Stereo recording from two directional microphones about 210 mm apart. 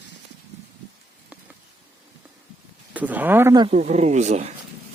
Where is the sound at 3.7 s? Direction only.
35° right (ahead or behind).